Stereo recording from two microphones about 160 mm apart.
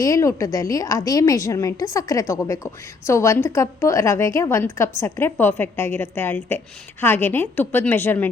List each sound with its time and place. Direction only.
0.0 s a woman's voice: 20° left (ahead or behind)